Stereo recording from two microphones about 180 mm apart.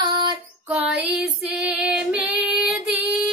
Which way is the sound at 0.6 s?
5° right (ahead or behind).